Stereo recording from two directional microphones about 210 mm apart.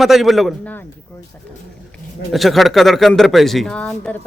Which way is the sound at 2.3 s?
Centre (ahead or behind).